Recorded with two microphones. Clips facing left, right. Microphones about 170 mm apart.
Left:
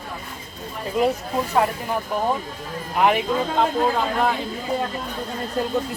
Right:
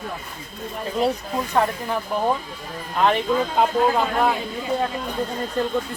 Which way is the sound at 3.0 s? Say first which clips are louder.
Left 1 dB; 10° left (ahead or behind).